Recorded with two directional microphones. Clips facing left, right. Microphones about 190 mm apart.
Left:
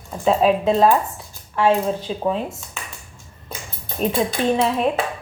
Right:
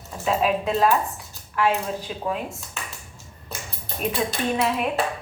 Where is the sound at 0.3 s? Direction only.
35° left (ahead or behind).